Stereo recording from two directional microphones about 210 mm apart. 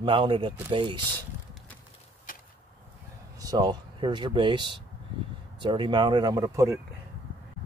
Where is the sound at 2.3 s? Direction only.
40° left (ahead or behind).